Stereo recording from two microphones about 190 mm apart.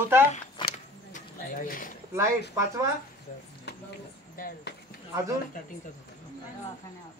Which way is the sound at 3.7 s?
60° left (ahead or behind).